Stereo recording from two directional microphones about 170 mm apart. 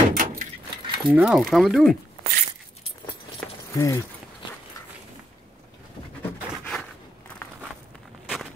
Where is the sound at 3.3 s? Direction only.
20° left (ahead or behind).